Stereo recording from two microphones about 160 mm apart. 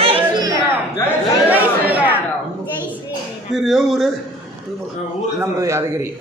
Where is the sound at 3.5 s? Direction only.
Centre (ahead or behind).